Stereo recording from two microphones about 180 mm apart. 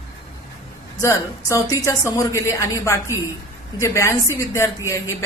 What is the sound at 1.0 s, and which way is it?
A woman's voice, 15° left (ahead or behind).